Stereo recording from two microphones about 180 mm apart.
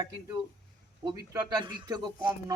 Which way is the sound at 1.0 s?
25° right (ahead or behind).